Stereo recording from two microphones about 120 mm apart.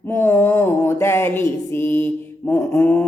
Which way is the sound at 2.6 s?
25° left (ahead or behind).